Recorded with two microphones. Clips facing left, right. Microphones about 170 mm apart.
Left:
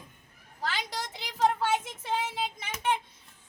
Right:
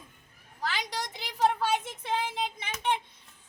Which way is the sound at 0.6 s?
Centre (ahead or behind).